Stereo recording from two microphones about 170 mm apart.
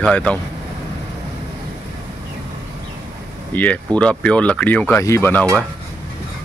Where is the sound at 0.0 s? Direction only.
5° left (ahead or behind).